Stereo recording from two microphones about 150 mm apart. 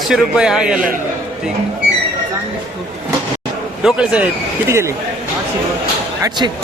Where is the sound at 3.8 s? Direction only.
5° right (ahead or behind).